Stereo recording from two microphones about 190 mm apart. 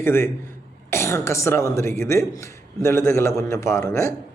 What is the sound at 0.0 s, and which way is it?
Speech, 10° left (ahead or behind).